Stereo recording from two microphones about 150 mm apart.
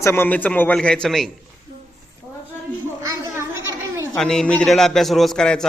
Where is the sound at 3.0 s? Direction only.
20° right (ahead or behind).